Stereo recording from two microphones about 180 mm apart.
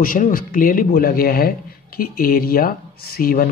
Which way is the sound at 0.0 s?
50° left (ahead or behind).